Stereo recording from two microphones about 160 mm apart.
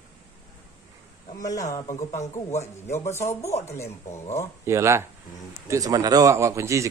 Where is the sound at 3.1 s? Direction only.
20° left (ahead or behind).